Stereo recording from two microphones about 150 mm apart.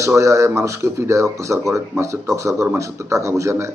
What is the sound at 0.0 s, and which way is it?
A man's voice, 20° right (ahead or behind).